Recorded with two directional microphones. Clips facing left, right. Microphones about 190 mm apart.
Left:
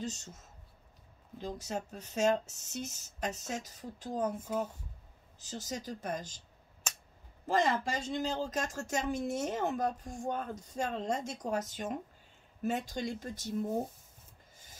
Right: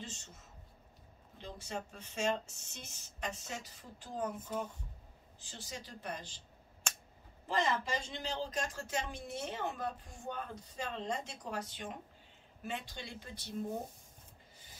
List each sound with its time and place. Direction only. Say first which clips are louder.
0.0 s speech: left 9 dB; 40° left (ahead or behind)
1.4 s speech: left 5 dB; 40° left (ahead or behind)
5.4 s speech: left 8 dB; 40° left (ahead or behind)
7.4 s speech: left 4 dB; 45° left (ahead or behind)